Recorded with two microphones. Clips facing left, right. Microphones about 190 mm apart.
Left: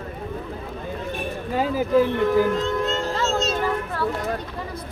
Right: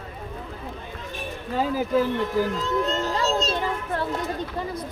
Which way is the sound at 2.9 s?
35° right (ahead or behind).